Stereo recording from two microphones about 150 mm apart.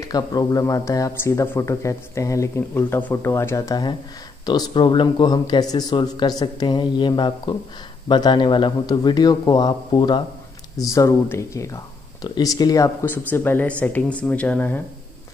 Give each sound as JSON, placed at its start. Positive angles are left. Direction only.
{"t": 0.0, "sound": "speech", "side_deg": 25}